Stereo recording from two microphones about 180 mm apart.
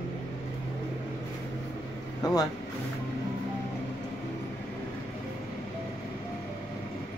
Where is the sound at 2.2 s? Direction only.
20° left (ahead or behind).